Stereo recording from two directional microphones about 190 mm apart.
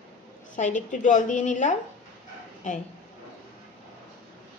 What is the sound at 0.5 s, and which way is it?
A woman's voice, 40° left (ahead or behind).